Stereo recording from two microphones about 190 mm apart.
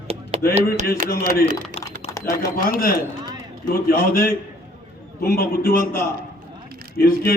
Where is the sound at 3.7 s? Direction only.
50° left (ahead or behind).